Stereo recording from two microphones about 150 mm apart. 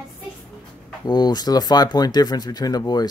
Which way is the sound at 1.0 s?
25° left (ahead or behind).